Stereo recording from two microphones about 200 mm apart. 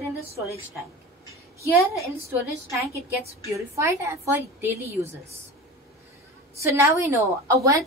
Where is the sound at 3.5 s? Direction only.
15° right (ahead or behind).